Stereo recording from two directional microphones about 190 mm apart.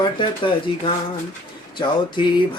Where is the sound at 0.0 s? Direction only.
25° left (ahead or behind).